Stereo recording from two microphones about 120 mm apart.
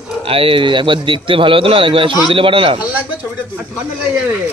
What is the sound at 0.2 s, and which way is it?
Speech, 50° right (ahead or behind).